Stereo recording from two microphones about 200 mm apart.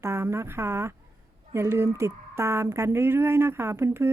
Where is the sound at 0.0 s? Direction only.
15° right (ahead or behind).